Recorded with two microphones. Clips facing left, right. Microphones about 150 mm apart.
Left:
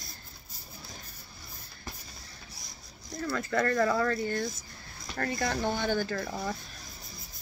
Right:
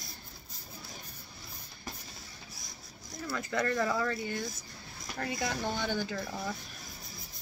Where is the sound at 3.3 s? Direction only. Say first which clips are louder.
Left 3 dB; 15° right (ahead or behind).